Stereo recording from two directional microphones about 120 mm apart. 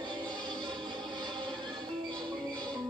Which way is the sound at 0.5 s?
40° right (ahead or behind).